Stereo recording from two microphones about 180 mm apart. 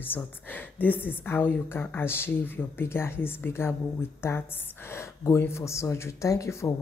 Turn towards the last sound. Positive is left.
turn(degrees=15)  # may be behind; listen again after turning